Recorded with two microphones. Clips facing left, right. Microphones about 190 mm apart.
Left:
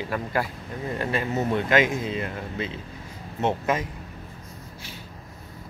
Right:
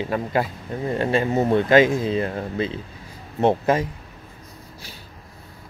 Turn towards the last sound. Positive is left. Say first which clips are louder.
# right 6 dB
turn(degrees=-35)  # may be behind; listen again after turning